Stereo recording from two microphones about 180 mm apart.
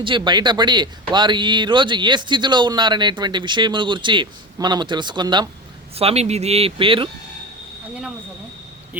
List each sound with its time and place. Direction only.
0.0 s speech: 25° right (ahead or behind)